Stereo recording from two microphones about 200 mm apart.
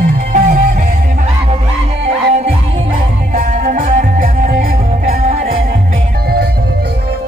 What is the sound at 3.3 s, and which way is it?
Music, 45° right (ahead or behind).